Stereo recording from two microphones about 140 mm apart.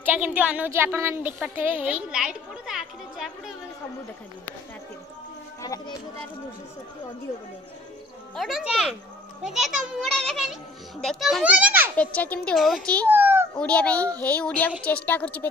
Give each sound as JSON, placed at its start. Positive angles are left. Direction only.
{"t": 0.0, "sound": "a woman's voice", "side_deg": -10}
{"t": 5.6, "sound": "speech", "side_deg": 25}
{"t": 8.4, "sound": "a child's voice", "side_deg": 0}
{"t": 12.0, "sound": "a woman's voice", "side_deg": 10}
{"t": 13.2, "sound": "a sound", "side_deg": -15}
{"t": 13.6, "sound": "a woman's voice", "side_deg": 10}